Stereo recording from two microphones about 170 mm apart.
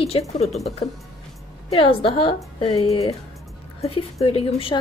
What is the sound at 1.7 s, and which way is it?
A woman's voice, 35° left (ahead or behind).